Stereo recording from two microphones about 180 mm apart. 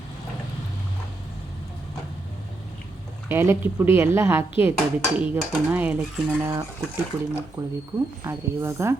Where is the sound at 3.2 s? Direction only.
15° right (ahead or behind).